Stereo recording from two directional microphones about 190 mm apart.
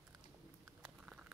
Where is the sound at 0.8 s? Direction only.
5° right (ahead or behind).